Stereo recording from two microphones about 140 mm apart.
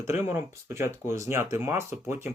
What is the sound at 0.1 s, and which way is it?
Speech, 20° right (ahead or behind).